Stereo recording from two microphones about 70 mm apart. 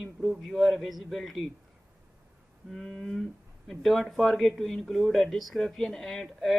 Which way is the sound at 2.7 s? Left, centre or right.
Centre.